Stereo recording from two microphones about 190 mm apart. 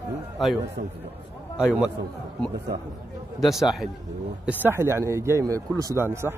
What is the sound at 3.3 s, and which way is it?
Speech, centre (ahead or behind).